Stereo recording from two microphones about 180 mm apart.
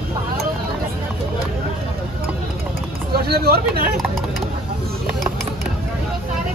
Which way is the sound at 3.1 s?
60° right (ahead or behind).